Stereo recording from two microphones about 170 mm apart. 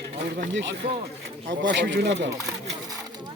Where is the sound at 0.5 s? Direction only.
90° right.